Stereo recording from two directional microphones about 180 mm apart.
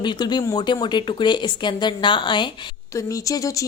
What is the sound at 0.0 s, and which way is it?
Speech, 25° left (ahead or behind).